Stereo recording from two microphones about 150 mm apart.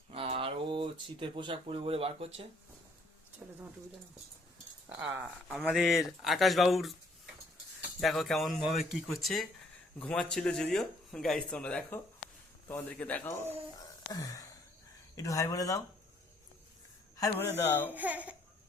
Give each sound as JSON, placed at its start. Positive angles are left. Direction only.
{"t": 0.1, "sound": "speech", "side_deg": -40}
{"t": 4.9, "sound": "speech", "side_deg": -10}
{"t": 8.0, "sound": "speech", "side_deg": 0}
{"t": 14.1, "sound": "a sound", "side_deg": 25}
{"t": 15.1, "sound": "speech", "side_deg": 20}
{"t": 17.2, "sound": "speech", "side_deg": 20}
{"t": 17.9, "sound": "speech", "side_deg": -10}